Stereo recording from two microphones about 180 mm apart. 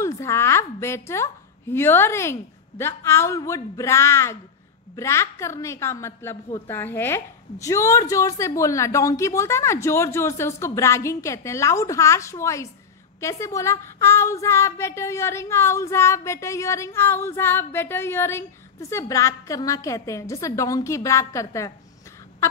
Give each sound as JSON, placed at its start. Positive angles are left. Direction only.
{"t": 0.0, "sound": "a woman's voice", "side_deg": 15}